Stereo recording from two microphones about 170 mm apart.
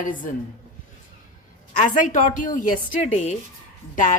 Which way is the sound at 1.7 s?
50° left (ahead or behind).